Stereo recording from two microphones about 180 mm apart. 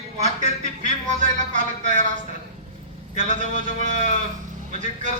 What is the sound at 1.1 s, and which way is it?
A man's voice, 40° right (ahead or behind).